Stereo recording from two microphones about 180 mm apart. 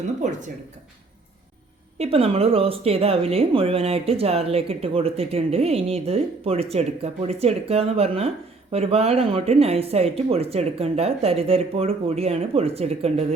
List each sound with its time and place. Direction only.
0.2 s speech: 40° right (ahead or behind)
2.0 s speech: 30° right (ahead or behind)